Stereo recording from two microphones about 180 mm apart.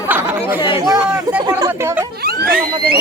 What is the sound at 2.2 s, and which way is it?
Speech, 60° right (ahead or behind).